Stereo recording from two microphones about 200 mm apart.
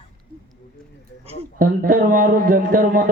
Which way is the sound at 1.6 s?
45° right (ahead or behind).